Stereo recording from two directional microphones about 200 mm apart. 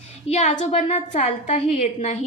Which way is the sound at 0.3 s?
35° left (ahead or behind).